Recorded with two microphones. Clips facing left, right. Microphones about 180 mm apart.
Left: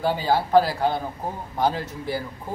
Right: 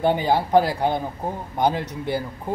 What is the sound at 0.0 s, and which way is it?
Speech, 20° right (ahead or behind).